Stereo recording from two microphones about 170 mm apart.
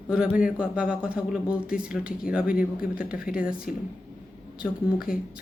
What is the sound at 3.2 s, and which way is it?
Speech, 55° left (ahead or behind).